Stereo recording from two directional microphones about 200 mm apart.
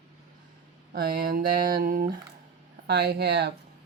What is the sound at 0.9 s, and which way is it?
Speech, 50° right (ahead or behind).